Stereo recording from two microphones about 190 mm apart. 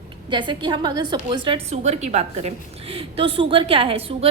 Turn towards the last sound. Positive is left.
turn(degrees=-30)  # may be behind; listen again after turning